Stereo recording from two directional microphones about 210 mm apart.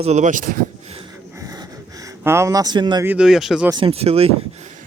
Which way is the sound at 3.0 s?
5° right (ahead or behind).